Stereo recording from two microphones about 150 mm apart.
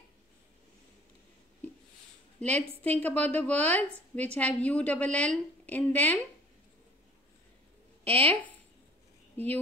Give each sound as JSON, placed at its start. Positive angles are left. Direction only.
{"t": 2.8, "sound": "a woman's voice", "side_deg": 10}
{"t": 8.0, "sound": "speech", "side_deg": -40}
{"t": 9.4, "sound": "a woman's voice", "side_deg": 10}